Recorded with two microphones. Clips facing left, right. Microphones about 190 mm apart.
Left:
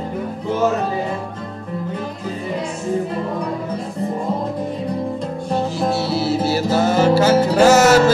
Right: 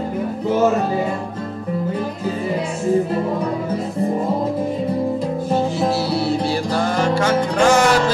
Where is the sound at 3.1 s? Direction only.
Centre (ahead or behind).